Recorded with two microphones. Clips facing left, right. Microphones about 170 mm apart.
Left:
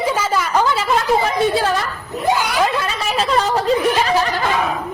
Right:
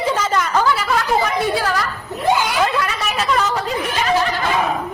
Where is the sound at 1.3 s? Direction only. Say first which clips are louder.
Left 2 dB; 25° left (ahead or behind).